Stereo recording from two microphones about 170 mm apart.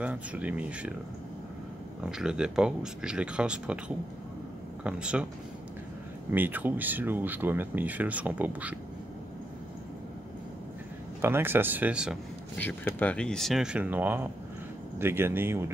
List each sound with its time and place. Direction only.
0.0 s speech: 10° right (ahead or behind)
2.0 s speech: 5° right (ahead or behind)
4.8 s speech: 5° right (ahead or behind)
6.3 s speech: 10° right (ahead or behind)
11.1 s speech: 15° right (ahead or behind)
12.5 s speech: 10° left (ahead or behind); by 15.6 s 15° right (ahead or behind)